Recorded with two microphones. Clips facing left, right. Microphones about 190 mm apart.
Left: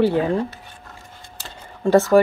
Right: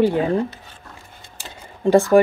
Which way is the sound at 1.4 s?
15° right (ahead or behind).